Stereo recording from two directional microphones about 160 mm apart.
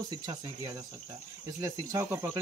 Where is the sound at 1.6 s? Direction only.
20° right (ahead or behind).